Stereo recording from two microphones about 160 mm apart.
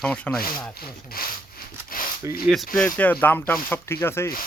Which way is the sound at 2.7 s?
10° left (ahead or behind).